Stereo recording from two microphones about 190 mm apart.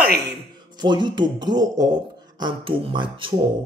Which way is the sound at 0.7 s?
25° right (ahead or behind).